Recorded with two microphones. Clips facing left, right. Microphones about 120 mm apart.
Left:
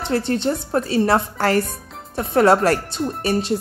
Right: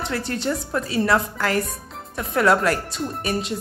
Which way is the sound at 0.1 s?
25° left (ahead or behind).